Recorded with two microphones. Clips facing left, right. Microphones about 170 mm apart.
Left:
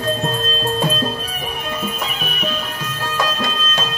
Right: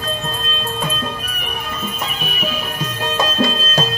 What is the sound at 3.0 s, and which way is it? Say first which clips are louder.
Music: right 4 dB; 25° right (ahead or behind).